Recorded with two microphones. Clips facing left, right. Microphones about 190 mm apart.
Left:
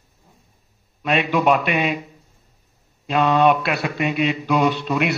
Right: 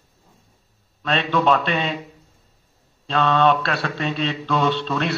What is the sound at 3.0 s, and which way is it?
A man's voice, 15° left (ahead or behind).